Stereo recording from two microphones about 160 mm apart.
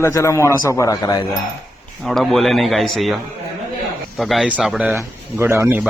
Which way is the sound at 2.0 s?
Centre (ahead or behind).